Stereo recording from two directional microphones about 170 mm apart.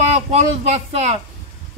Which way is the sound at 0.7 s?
40° right (ahead or behind).